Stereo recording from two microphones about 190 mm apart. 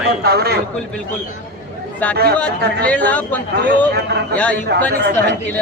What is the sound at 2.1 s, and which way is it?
Speech, 55° right (ahead or behind).